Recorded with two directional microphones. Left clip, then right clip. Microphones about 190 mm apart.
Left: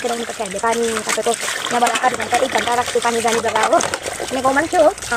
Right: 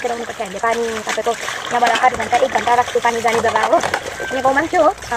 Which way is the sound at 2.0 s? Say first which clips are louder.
Right 2 dB; 35° left (ahead or behind).